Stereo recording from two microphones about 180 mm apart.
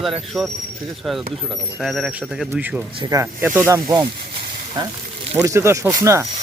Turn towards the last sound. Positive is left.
turn(degrees=-15)  # may be behind; listen again after turning